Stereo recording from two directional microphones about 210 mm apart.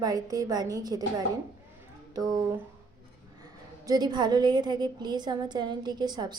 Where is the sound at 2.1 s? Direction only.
15° right (ahead or behind).